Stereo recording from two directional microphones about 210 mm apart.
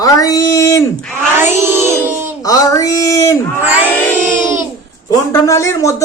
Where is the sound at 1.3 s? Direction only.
10° right (ahead or behind).